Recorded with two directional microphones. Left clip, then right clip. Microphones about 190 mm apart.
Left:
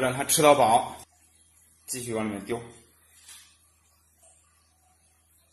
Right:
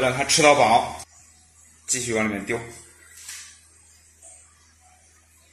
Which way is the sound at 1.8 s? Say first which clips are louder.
Right 7 dB; 10° left (ahead or behind).